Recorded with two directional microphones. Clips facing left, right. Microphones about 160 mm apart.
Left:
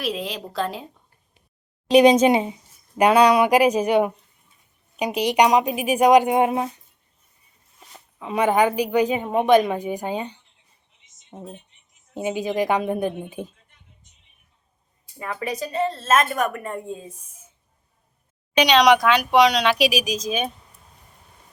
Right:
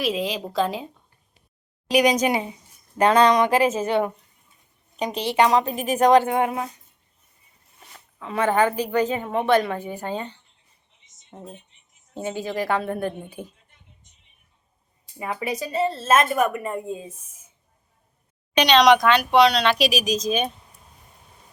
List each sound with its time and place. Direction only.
0.0 s a woman's voice: centre (ahead or behind)
1.9 s a woman's voice: 25° left (ahead or behind)
3.0 s speech: 10° left (ahead or behind)
7.9 s speech: 15° left (ahead or behind)
15.2 s a woman's voice: 10° right (ahead or behind)
18.5 s speech: 10° left (ahead or behind)